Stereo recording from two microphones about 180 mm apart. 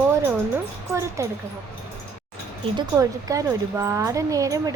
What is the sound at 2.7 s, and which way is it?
A woman's voice, 20° right (ahead or behind).